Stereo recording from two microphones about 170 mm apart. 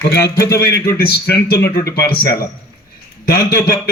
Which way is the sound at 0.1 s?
70° left (ahead or behind).